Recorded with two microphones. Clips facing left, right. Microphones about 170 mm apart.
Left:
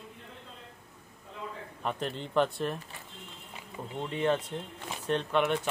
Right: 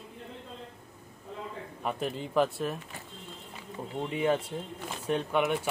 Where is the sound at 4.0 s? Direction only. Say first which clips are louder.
Right 1 dB; 10° right (ahead or behind).